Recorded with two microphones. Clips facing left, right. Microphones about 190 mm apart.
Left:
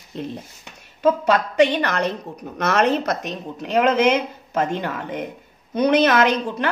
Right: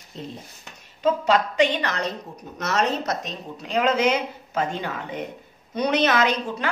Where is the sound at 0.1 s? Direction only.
65° left (ahead or behind).